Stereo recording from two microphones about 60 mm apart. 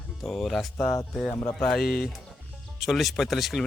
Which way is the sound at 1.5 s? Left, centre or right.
Centre.